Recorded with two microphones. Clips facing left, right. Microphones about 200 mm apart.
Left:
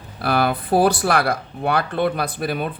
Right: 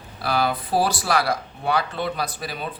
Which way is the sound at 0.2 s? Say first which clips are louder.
Left 3 dB; 55° left (ahead or behind).